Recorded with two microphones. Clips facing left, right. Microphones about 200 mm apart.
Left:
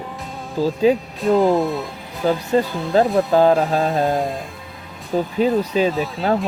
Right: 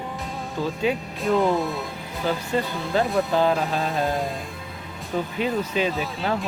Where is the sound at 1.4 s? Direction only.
Centre (ahead or behind).